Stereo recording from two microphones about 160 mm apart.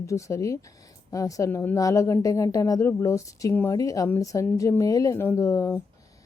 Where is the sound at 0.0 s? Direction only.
20° left (ahead or behind).